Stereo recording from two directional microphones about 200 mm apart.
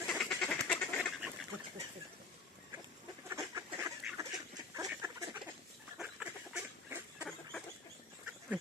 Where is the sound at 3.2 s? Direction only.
15° right (ahead or behind).